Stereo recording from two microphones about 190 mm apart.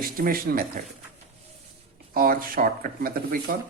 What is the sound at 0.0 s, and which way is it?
Speech, 50° right (ahead or behind).